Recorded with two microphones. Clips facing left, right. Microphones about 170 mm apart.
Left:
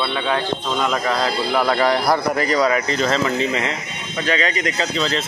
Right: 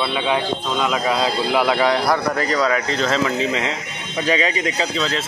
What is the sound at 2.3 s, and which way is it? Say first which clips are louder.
Speech: left 1 dB; 15° left (ahead or behind).